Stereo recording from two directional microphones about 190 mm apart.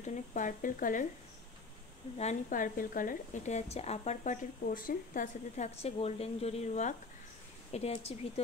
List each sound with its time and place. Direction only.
0.0 s speech: 40° left (ahead or behind)
2.1 s a woman's voice: 40° left (ahead or behind)